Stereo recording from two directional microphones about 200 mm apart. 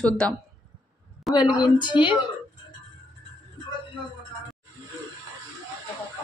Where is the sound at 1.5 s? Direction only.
20° left (ahead or behind).